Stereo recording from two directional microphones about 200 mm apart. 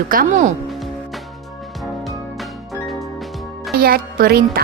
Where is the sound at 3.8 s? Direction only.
50° right (ahead or behind).